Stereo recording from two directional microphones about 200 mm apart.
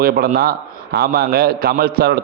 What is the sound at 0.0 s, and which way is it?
A man's voice, 50° right (ahead or behind).